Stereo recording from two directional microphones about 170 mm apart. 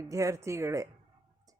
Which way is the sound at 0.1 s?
20° right (ahead or behind).